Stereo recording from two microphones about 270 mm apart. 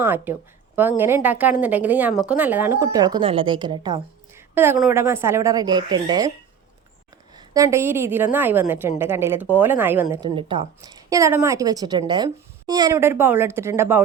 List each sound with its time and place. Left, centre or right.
0.0 s a woman's voice: centre
7.3 s a woman's voice: centre